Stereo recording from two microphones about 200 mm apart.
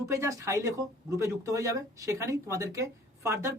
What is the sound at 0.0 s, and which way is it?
Speech, 15° right (ahead or behind).